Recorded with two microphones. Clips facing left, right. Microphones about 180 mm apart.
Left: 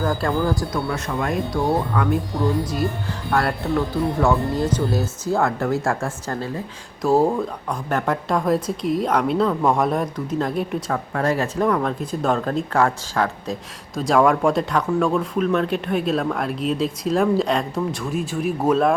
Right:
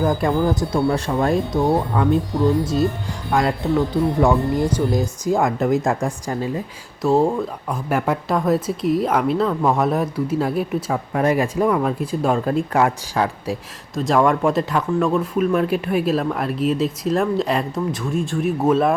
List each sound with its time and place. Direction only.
0.0 s speech: 15° right (ahead or behind)
0.9 s speech: 30° right (ahead or behind)
3.3 s speech: 15° right (ahead or behind)
7.0 s speech: centre (ahead or behind)
13.9 s speech: centre (ahead or behind)